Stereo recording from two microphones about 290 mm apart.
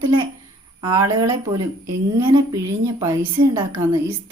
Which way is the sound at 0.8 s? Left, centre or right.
Centre.